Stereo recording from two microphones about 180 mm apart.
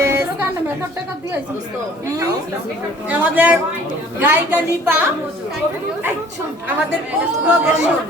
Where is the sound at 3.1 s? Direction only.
10° right (ahead or behind).